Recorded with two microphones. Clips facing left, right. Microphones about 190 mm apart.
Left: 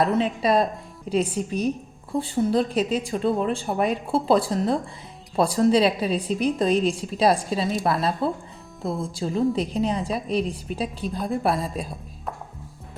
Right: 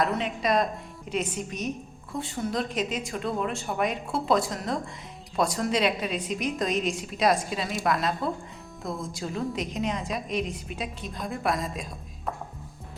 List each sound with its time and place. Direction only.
0.0 s a woman's voice: 30° left (ahead or behind)